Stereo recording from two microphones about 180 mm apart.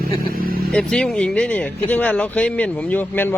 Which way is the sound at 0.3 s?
55° right (ahead or behind).